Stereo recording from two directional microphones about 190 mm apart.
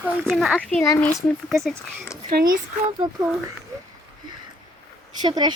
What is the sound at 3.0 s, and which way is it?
Speech, 25° right (ahead or behind).